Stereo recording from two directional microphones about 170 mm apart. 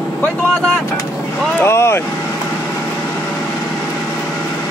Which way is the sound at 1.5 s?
15° left (ahead or behind).